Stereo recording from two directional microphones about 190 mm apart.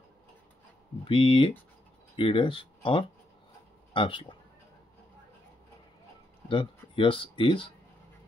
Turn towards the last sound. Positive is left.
turn(degrees=25)  # may be behind; listen again after turning